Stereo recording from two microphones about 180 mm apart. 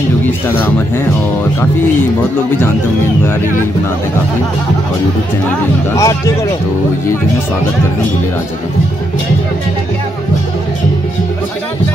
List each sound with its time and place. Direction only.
5.9 s speech: 15° left (ahead or behind)